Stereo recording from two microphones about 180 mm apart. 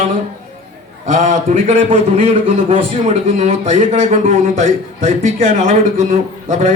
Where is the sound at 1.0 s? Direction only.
40° right (ahead or behind).